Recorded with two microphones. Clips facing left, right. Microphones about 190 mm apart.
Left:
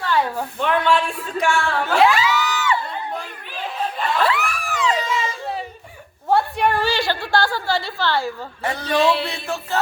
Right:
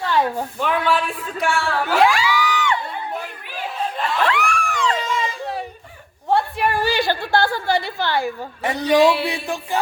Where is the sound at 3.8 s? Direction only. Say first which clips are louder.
Left 1 dB; 5° left (ahead or behind).